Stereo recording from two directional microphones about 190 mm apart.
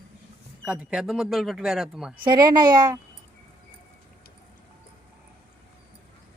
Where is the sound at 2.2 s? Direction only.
20° right (ahead or behind).